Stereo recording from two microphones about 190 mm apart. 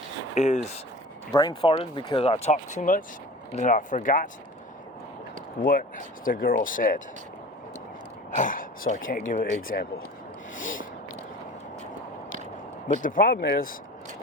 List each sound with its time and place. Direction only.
0.3 s speech: 35° left (ahead or behind)
1.3 s speech: 20° left (ahead or behind); by 4.3 s 45° left (ahead or behind)
5.6 s speech: 50° left (ahead or behind)
8.3 s speech: 45° left (ahead or behind)
10.6 s snort: 45° left (ahead or behind)
12.9 s speech: 45° left (ahead or behind)